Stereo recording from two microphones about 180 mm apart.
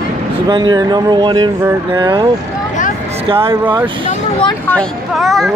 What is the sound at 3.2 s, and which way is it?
Speech, 30° right (ahead or behind).